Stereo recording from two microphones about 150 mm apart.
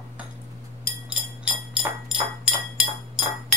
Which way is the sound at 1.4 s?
5° right (ahead or behind).